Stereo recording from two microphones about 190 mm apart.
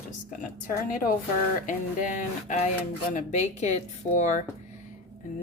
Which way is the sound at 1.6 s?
45° left (ahead or behind).